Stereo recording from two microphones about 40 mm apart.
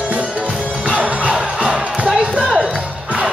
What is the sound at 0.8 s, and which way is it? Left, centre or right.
Music, right.